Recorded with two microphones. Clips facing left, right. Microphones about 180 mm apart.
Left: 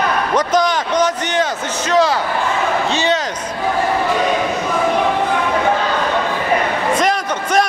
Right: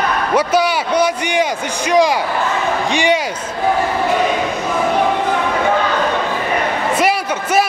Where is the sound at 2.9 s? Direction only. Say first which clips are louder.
Right 5 dB; 15° right (ahead or behind).